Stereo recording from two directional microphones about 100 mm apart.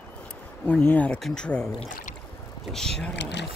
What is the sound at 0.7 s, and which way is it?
Speech, 15° left (ahead or behind).